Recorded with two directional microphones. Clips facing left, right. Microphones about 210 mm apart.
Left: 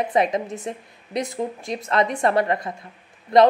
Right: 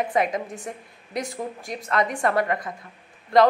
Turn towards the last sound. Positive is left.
turn(degrees=20)  # may be behind; listen again after turning